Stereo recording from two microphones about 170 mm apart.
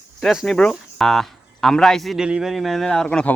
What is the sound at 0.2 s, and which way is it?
Speech, centre (ahead or behind).